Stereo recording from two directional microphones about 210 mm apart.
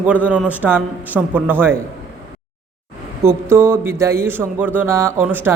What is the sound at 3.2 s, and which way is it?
A man's voice, 15° right (ahead or behind).